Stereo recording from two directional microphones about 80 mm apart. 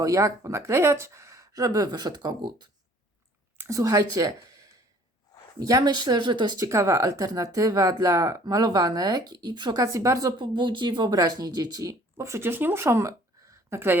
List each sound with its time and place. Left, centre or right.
0.0 s speech: right
3.7 s speech: right
6.6 s speech: right
9.8 s speech: right
10.3 s speech: right